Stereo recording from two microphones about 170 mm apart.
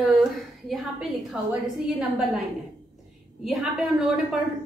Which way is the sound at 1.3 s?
5° right (ahead or behind).